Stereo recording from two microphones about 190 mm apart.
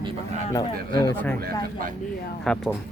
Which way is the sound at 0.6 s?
25° left (ahead or behind).